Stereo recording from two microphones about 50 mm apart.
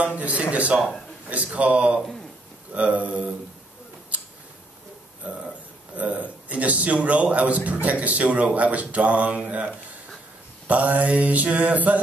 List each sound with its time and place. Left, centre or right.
0.0 s speech: right
5.9 s speech: right
10.7 s mantra: right